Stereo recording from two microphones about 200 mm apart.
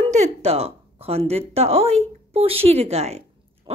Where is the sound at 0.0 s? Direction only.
35° right (ahead or behind).